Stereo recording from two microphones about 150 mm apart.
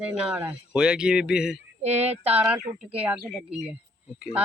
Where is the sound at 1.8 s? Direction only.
45° right (ahead or behind).